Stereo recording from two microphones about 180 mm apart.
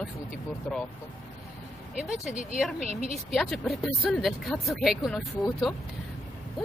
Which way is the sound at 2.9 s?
35° right (ahead or behind).